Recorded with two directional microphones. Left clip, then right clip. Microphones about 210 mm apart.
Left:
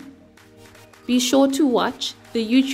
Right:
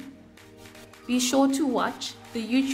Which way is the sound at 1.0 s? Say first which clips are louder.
Left 5 dB; 30° left (ahead or behind).